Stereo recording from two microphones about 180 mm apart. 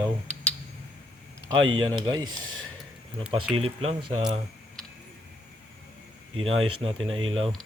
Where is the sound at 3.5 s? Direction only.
35° right (ahead or behind).